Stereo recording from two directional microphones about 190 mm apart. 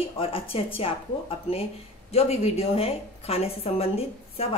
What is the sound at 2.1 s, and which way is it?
A woman's voice, 35° left (ahead or behind).